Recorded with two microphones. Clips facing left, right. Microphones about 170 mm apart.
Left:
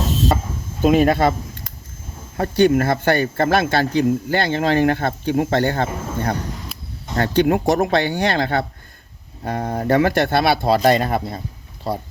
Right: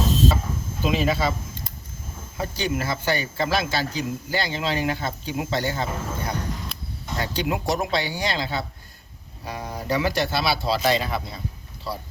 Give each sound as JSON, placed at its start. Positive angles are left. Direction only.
{"t": 0.8, "sound": "speech", "side_deg": 55}
{"t": 2.4, "sound": "speech", "side_deg": 55}